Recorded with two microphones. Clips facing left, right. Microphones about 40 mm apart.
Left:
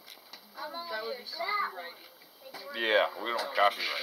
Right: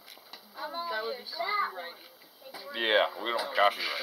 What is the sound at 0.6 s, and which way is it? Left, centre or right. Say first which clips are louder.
Speech: right 3 dB; centre.